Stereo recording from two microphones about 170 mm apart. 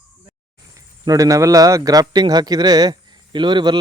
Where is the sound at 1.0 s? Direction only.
20° right (ahead or behind).